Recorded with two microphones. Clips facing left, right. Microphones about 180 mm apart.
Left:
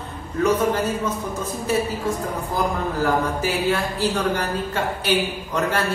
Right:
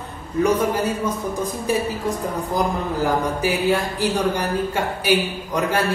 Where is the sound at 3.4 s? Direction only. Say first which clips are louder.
Right 2 dB; 15° right (ahead or behind).